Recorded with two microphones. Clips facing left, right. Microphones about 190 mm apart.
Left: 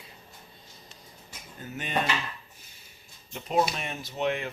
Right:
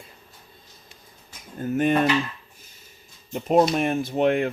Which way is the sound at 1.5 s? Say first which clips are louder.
Right 16 dB; 50° right (ahead or behind).